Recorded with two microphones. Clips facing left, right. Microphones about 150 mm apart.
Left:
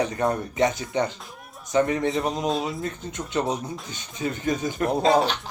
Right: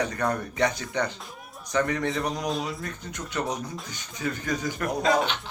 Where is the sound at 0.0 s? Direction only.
25° left (ahead or behind).